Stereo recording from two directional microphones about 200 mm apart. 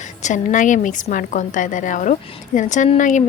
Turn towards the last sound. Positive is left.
turn(degrees=40)  # may be behind; listen again after turning